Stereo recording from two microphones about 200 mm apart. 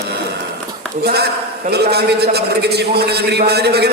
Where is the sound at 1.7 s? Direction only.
55° right (ahead or behind).